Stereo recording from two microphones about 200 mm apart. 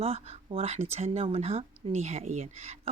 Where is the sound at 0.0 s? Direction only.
30° right (ahead or behind).